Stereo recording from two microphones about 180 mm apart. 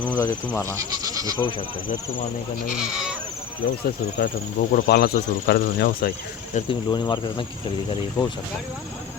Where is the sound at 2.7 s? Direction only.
5° right (ahead or behind).